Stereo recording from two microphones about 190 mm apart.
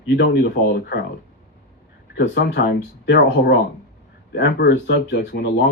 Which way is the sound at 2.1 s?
65° left (ahead or behind).